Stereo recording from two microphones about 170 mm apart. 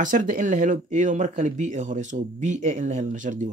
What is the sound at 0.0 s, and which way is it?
Speech, 50° right (ahead or behind).